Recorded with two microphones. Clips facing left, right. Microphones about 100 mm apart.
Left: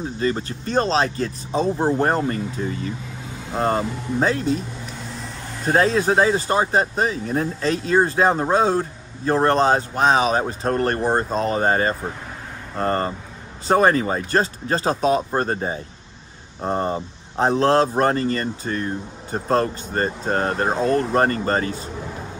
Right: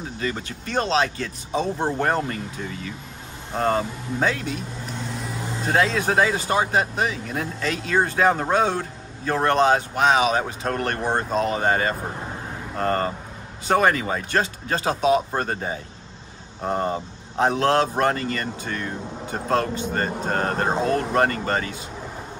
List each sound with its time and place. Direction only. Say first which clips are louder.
0.0 s speech: left 5 dB; 35° left (ahead or behind)
5.7 s speech: left 4 dB; 35° left (ahead or behind)